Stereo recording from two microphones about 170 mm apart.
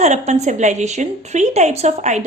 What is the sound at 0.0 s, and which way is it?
A woman's voice, 40° right (ahead or behind).